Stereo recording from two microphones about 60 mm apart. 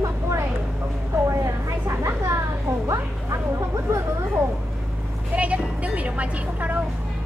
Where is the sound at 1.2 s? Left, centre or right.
Right.